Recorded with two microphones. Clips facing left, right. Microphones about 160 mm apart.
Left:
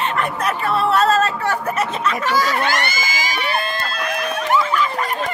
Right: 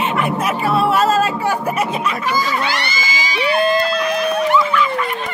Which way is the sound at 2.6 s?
50° left (ahead or behind).